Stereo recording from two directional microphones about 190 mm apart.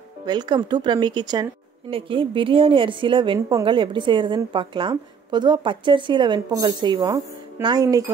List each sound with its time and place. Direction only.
0.2 s speech: 20° right (ahead or behind)